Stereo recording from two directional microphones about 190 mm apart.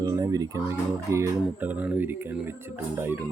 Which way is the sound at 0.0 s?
20° right (ahead or behind).